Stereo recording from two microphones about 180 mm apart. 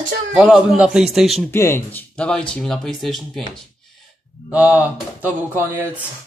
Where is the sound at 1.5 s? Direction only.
15° left (ahead or behind); by 5.8 s 10° right (ahead or behind).